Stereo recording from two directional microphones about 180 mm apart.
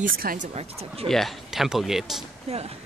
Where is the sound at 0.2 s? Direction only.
55° right (ahead or behind).